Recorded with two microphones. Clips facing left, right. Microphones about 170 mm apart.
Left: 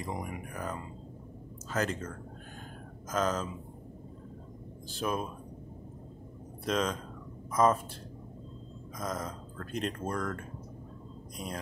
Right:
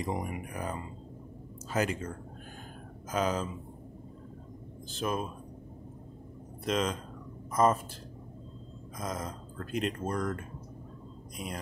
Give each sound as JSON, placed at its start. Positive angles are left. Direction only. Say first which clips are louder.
{"t": 0.0, "sound": "speech", "louder": "right 3 dB", "side_deg": -15}
{"t": 4.8, "sound": "speech", "louder": "even", "side_deg": 0}
{"t": 6.6, "sound": "speech", "louder": "even", "side_deg": 0}
{"t": 8.9, "sound": "speech", "louder": "even", "side_deg": 0}
{"t": 11.3, "sound": "speech", "louder": "even", "side_deg": 0}